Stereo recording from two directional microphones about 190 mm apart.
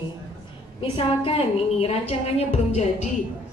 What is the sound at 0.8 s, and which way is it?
A woman's voice, 30° left (ahead or behind).